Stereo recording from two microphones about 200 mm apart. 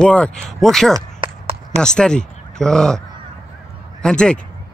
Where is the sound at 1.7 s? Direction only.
5° left (ahead or behind).